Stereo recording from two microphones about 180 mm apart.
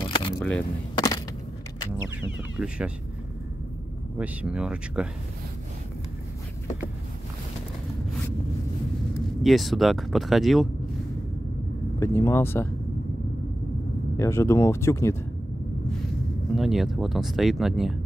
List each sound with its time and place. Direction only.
0.0 s a sound: 25° left (ahead or behind)
0.4 s speech: 5° left (ahead or behind)
0.9 s a sound: 25° left (ahead or behind)
2.5 s speech: 5° right (ahead or behind)
4.2 s speech: 5° right (ahead or behind)
9.4 s speech: centre (ahead or behind)
12.0 s speech: 15° left (ahead or behind)
14.1 s speech: 15° left (ahead or behind)
16.5 s speech: centre (ahead or behind)